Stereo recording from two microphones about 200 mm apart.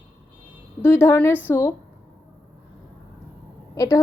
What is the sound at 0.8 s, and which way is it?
Speech, 10° left (ahead or behind).